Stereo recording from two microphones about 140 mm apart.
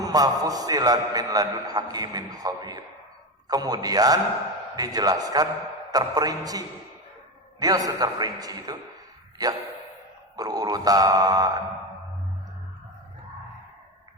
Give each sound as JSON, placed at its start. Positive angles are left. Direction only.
{"t": 0.0, "sound": "a man's voice", "side_deg": -25}
{"t": 10.3, "sound": "a man's voice", "side_deg": -25}